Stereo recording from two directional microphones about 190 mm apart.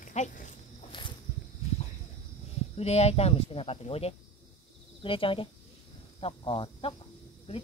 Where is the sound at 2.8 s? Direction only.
35° left (ahead or behind).